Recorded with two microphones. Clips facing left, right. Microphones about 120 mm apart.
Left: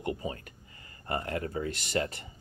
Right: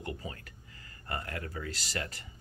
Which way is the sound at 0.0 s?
20° left (ahead or behind).